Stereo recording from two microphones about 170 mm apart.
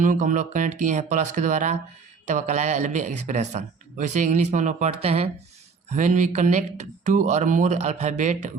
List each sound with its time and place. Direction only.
0.0 s a man's voice: 50° right (ahead or behind)